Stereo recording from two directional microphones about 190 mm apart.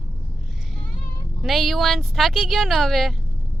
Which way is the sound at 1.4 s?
Centre (ahead or behind).